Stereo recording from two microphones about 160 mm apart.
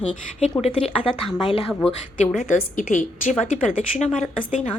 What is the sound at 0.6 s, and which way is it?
Speech, 40° left (ahead or behind).